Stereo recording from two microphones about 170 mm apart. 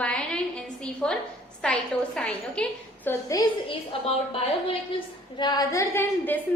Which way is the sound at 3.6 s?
35° left (ahead or behind).